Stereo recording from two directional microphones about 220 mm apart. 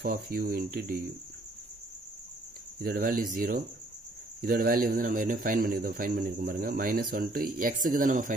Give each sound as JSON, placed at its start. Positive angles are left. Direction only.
{"t": 0.0, "sound": "speech", "side_deg": -40}
{"t": 2.8, "sound": "speech", "side_deg": -40}